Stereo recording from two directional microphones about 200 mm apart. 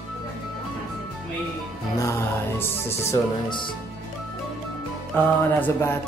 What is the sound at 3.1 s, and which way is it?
Speech, 25° left (ahead or behind).